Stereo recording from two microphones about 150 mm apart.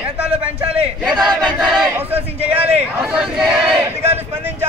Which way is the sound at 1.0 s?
Centre (ahead or behind).